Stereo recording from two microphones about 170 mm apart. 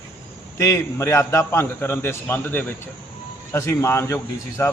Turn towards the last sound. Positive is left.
turn(degrees=15)  # may be behind; listen again after turning